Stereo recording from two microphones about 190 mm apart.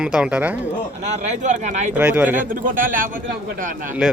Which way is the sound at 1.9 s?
5° right (ahead or behind).